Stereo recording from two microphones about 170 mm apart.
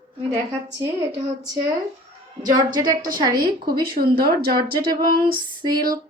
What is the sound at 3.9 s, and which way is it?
Speech, 60° right (ahead or behind).